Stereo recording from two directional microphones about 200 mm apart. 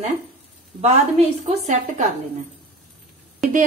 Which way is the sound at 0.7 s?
30° right (ahead or behind).